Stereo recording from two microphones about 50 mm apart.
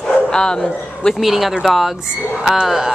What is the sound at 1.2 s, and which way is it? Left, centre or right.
Speech, centre.